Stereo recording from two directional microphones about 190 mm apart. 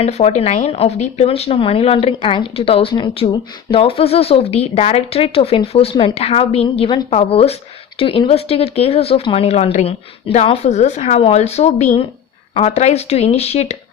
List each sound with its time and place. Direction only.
0.0 s speech: 35° left (ahead or behind)